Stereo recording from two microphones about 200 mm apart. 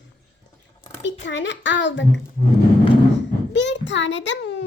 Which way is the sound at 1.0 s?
65° left (ahead or behind).